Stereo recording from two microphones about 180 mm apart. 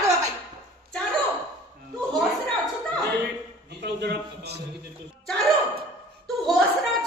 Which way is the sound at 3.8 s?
65° right (ahead or behind).